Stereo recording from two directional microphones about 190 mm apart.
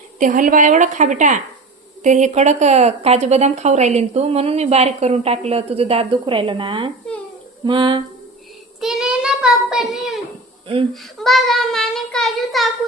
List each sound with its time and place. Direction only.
0.2 s a woman's voice: 45° right (ahead or behind); by 8.0 s 25° right (ahead or behind)
8.8 s speech: 5° right (ahead or behind)
11.2 s speech: centre (ahead or behind)